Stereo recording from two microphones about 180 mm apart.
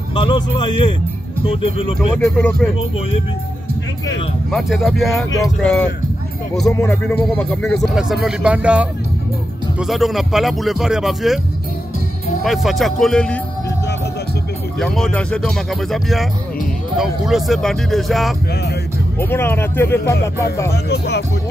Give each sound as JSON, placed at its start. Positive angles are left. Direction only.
{"t": 0.1, "sound": "a man's voice", "side_deg": 25}
{"t": 2.0, "sound": "speech", "side_deg": 5}
{"t": 4.5, "sound": "speech", "side_deg": 0}
{"t": 6.9, "sound": "speech", "side_deg": 5}
{"t": 12.4, "sound": "speech", "side_deg": 0}
{"t": 14.8, "sound": "speech", "side_deg": 5}
{"t": 19.1, "sound": "speech", "side_deg": 15}
{"t": 20.7, "sound": "speech", "side_deg": 65}